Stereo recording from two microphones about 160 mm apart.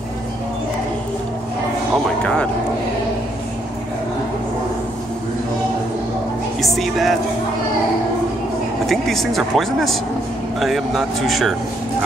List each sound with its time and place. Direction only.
6.6 s speech: centre (ahead or behind)
8.8 s speech: centre (ahead or behind)